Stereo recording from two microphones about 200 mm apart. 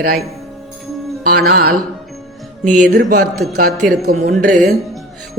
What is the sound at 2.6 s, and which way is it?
A woman's voice, 40° right (ahead or behind).